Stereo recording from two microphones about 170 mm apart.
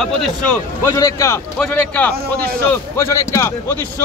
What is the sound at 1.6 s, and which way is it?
Speech, 5° left (ahead or behind).